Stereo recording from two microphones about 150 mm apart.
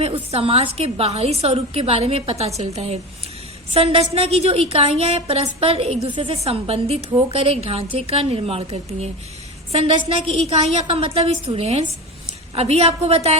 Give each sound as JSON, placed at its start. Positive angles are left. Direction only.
{"t": 0.0, "sound": "a woman's voice", "side_deg": -40}